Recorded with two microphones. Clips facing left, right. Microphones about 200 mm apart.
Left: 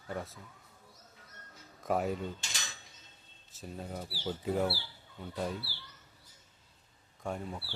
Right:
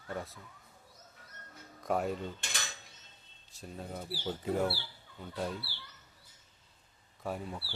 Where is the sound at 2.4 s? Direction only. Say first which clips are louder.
Right 3 dB; 55° right (ahead or behind).